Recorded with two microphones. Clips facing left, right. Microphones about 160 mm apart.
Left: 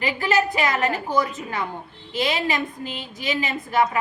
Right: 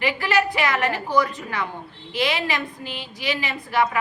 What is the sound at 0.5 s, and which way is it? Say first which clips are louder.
A woman's voice: even; 20° left (ahead or behind).